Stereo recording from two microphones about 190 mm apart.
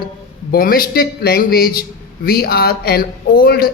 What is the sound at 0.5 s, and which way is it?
A man's voice, 50° left (ahead or behind).